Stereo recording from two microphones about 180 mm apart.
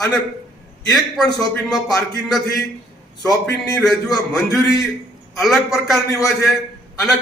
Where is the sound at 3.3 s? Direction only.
20° left (ahead or behind).